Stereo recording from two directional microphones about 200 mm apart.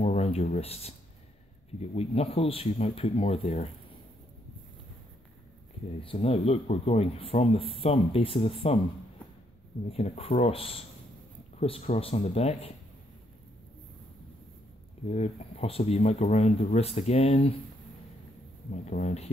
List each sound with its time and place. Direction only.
0.0 s speech: 35° left (ahead or behind)
6.1 s speech: 30° left (ahead or behind)
9.8 s speech: 30° left (ahead or behind)
15.0 s speech: 35° left (ahead or behind)
18.7 s speech: 40° left (ahead or behind)